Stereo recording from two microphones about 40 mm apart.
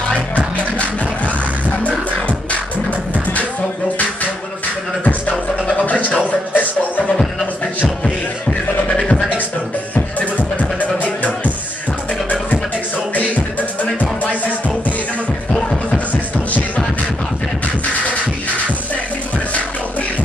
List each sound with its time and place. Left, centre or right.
1.8 s music: left
5.8 s music: left
8.5 s music: left
13.1 s music: left
15.9 s music: left